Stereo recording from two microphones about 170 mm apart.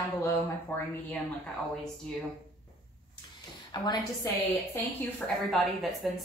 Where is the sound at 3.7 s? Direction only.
25° left (ahead or behind).